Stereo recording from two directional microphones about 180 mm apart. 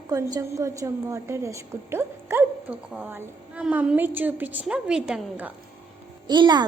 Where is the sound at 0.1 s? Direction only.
20° right (ahead or behind).